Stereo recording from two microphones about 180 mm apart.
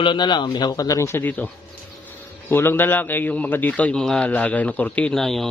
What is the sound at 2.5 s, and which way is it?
A man's voice, 10° left (ahead or behind).